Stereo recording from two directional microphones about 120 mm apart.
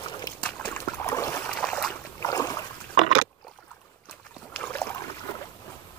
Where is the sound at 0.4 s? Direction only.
10° left (ahead or behind).